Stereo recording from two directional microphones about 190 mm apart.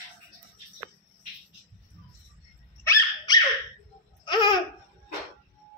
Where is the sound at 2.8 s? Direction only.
20° left (ahead or behind).